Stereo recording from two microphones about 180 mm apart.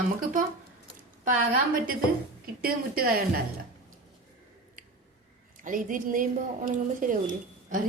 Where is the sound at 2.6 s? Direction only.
55° right (ahead or behind).